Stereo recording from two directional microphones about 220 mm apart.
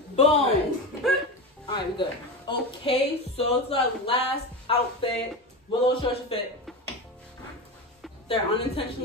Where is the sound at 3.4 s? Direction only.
25° left (ahead or behind).